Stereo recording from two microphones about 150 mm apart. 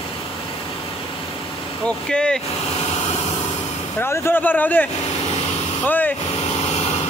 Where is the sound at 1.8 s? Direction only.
5° left (ahead or behind).